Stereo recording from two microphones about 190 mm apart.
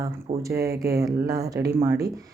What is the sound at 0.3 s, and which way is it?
Speech, 35° right (ahead or behind).